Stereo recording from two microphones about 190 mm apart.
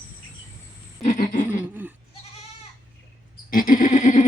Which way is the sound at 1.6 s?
10° right (ahead or behind).